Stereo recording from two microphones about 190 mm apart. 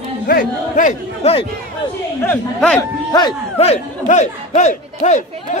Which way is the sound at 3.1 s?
20° left (ahead or behind).